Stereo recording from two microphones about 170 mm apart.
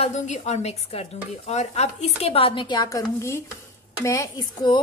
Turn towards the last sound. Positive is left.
turn(degrees=25)  # may be behind; listen again after turning